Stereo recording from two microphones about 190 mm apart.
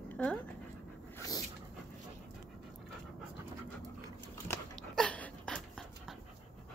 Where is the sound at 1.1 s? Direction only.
20° left (ahead or behind).